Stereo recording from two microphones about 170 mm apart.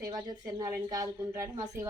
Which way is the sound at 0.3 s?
20° right (ahead or behind).